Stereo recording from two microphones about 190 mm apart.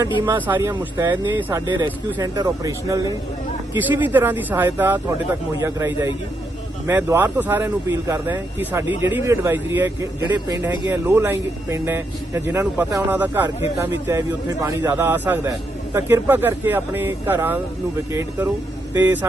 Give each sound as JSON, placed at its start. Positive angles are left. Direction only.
{"t": 0.2, "sound": "speech", "side_deg": -10}
{"t": 1.6, "sound": "speech", "side_deg": -20}